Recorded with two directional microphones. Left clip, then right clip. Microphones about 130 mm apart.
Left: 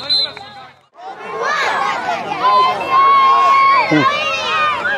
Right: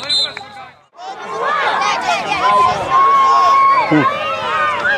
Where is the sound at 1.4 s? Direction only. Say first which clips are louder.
Right 1 dB; 45° left (ahead or behind).